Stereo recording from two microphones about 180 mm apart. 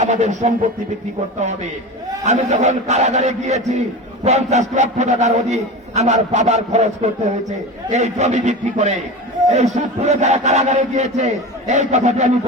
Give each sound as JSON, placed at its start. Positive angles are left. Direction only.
{"t": 0.0, "sound": "a man's voice", "side_deg": -40}
{"t": 2.2, "sound": "a man's voice", "side_deg": -40}